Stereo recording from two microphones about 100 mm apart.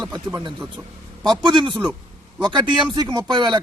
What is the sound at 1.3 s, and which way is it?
Speech, 50° right (ahead or behind).